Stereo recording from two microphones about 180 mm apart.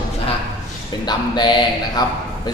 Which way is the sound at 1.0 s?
25° left (ahead or behind).